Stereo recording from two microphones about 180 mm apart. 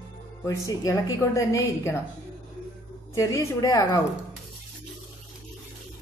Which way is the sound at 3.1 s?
15° left (ahead or behind).